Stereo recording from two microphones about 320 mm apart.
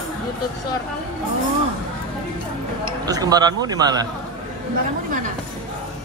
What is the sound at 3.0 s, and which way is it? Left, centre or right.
A man's voice, centre.